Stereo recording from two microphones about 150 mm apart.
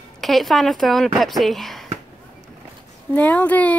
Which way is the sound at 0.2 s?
Centre (ahead or behind).